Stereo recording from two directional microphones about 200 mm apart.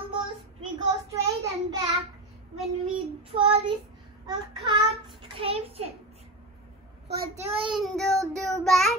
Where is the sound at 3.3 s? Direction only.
25° right (ahead or behind).